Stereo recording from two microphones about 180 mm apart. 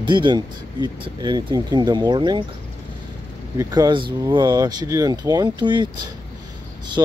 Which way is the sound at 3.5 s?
20° right (ahead or behind).